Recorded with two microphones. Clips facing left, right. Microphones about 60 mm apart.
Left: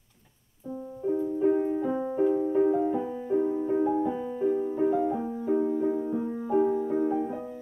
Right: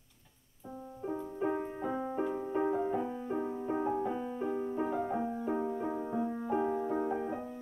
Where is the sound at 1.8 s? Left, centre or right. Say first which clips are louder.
Left 8 dB; centre.